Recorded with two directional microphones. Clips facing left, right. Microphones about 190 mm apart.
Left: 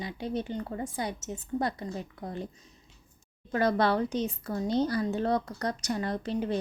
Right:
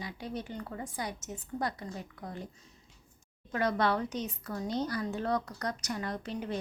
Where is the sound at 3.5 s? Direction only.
35° left (ahead or behind).